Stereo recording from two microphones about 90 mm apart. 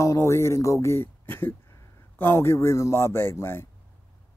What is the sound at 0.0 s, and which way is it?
A man's voice, 35° left (ahead or behind).